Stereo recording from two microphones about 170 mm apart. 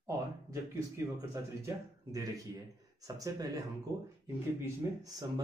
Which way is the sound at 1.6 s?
20° right (ahead or behind).